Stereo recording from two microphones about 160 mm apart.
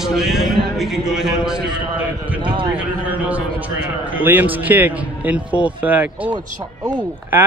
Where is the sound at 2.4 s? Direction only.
30° right (ahead or behind).